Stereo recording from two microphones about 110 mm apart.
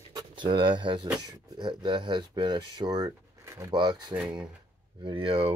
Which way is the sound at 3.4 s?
25° right (ahead or behind).